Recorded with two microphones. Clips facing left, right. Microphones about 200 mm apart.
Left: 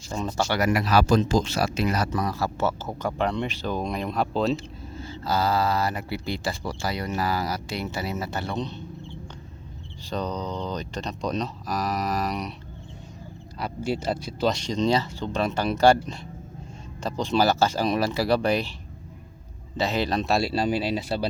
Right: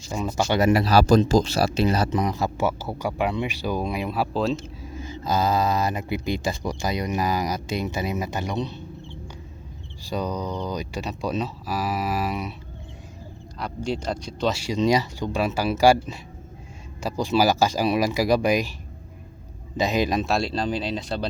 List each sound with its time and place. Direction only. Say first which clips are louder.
0.1 s speech: right 2 dB; 10° right (ahead or behind)
0.4 s speech: right 5 dB; 25° right (ahead or behind); by 4.9 s centre (ahead or behind)
4.9 s speech: right 2 dB; 15° right (ahead or behind)
10.0 s speech: right 2 dB; 10° right (ahead or behind)
13.6 s speech: even; 5° left (ahead or behind); by 18.7 s 10° right (ahead or behind)
19.7 s speech: right 2 dB; 15° right (ahead or behind)
20.2 s speech: left 1 dB; 5° left (ahead or behind)